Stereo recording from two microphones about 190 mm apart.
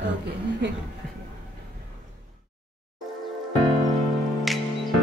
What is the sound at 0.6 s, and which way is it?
Speech, 65° right (ahead or behind).